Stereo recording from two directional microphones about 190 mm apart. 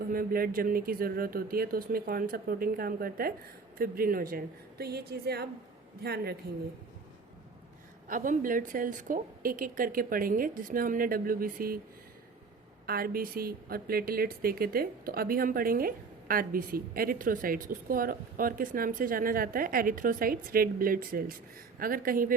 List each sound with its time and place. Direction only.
0.0 s a woman's voice: 50° right (ahead or behind)
8.0 s a woman's voice: 45° right (ahead or behind)
12.8 s a woman's voice: 50° right (ahead or behind)